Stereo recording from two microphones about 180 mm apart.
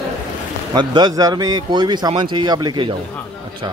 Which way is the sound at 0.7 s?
25° right (ahead or behind).